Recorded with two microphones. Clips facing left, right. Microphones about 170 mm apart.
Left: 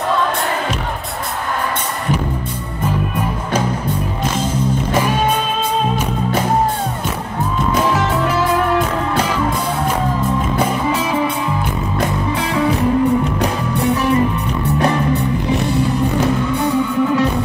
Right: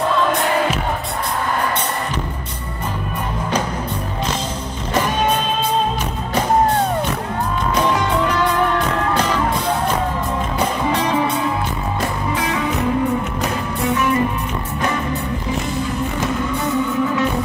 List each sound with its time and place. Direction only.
10.9 s music: 5° left (ahead or behind)
13.8 s music: 35° left (ahead or behind)